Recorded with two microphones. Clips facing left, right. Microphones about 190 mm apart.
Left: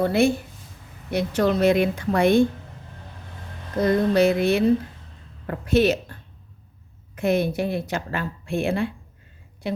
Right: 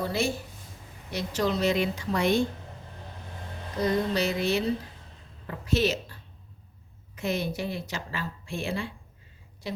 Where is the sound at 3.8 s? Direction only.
55° left (ahead or behind).